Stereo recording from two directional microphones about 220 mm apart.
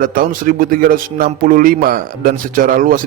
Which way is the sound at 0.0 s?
40° right (ahead or behind).